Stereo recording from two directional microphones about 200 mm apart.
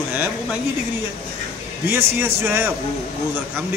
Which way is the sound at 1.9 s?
10° right (ahead or behind).